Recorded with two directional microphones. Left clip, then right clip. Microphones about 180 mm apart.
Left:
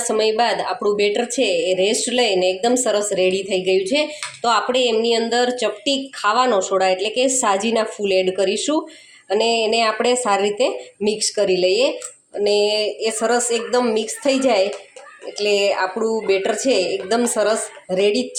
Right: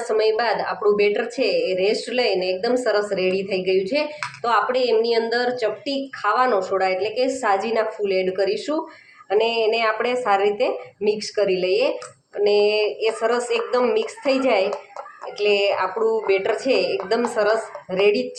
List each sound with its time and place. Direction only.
0.1 s a woman's voice: 45° left (ahead or behind)